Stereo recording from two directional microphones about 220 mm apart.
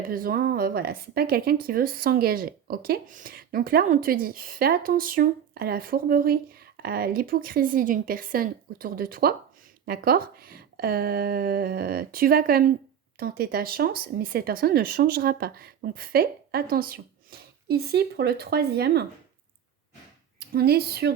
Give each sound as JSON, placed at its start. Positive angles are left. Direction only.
{"t": 0.1, "sound": "speech", "side_deg": -40}
{"t": 20.5, "sound": "speech", "side_deg": -45}